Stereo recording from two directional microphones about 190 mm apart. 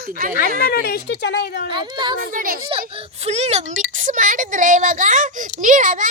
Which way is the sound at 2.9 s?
30° right (ahead or behind).